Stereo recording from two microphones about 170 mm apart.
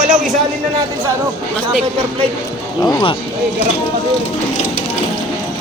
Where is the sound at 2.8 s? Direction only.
20° left (ahead or behind).